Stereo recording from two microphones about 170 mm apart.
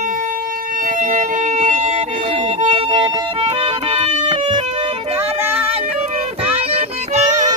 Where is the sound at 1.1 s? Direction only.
45° right (ahead or behind).